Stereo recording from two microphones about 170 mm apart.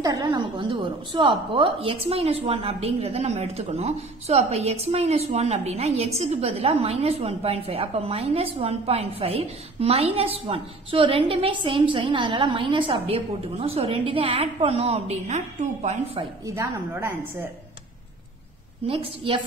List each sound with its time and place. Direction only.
0.0 s a woman's voice: 25° right (ahead or behind); by 16.0 s 45° right (ahead or behind)
16.2 s a woman's voice: 20° right (ahead or behind)
18.9 s a woman's voice: 30° right (ahead or behind)